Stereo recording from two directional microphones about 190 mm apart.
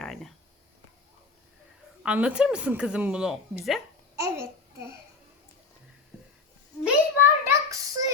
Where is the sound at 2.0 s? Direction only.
5° right (ahead or behind).